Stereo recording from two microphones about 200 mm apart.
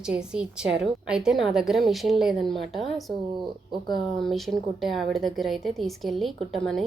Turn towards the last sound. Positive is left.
turn(degrees=0)  # may be behind; listen again after turning